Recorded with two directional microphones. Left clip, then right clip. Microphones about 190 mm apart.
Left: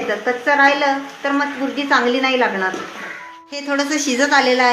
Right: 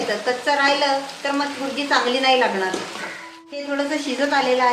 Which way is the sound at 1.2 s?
35° left (ahead or behind).